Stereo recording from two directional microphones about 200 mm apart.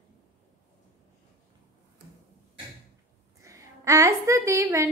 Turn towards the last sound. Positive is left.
turn(degrees=-15)  # may be behind; listen again after turning